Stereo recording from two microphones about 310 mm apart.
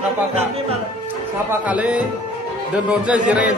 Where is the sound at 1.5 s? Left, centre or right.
Centre.